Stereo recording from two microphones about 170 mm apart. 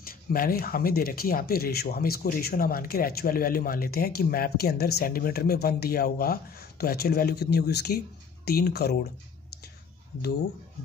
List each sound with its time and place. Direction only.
0.0 s speech: 60° left (ahead or behind)